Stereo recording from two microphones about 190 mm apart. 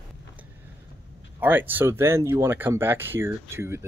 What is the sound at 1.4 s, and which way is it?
Speech, 10° right (ahead or behind).